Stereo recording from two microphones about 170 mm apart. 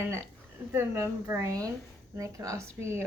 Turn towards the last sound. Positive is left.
turn(degrees=-15)  # may be behind; listen again after turning